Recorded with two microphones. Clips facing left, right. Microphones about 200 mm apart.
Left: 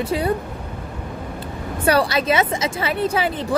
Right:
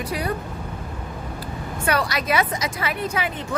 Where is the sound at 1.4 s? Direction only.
30° left (ahead or behind).